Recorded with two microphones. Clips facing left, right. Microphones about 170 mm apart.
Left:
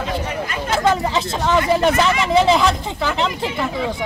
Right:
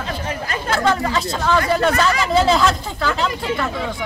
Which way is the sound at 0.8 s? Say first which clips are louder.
Left 1 dB; 20° left (ahead or behind).